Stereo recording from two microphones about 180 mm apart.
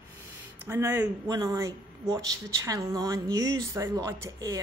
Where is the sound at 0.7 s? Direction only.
15° right (ahead or behind).